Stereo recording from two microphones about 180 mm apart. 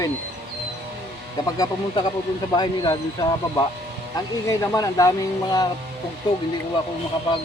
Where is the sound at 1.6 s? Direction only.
25° left (ahead or behind).